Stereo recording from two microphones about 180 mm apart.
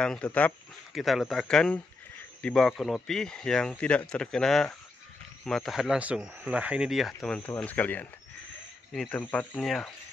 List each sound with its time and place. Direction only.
0.0 s speech: 5° left (ahead or behind)